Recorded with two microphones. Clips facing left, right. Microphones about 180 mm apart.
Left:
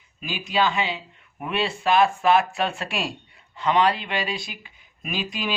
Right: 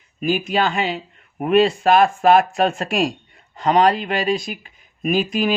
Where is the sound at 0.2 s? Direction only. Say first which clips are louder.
Right 5 dB; 50° right (ahead or behind).